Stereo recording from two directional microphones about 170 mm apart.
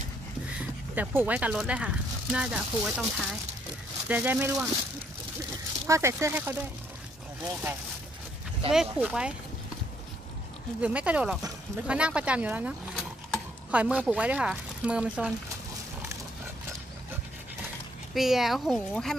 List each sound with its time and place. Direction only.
0.6 s speech: 10° right (ahead or behind)
5.9 s speech: 15° right (ahead or behind)
8.7 s speech: 5° right (ahead or behind)
10.8 s speech: 10° right (ahead or behind)
18.1 s speech: centre (ahead or behind)